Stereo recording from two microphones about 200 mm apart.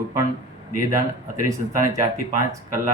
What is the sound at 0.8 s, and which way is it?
Speech, 15° right (ahead or behind).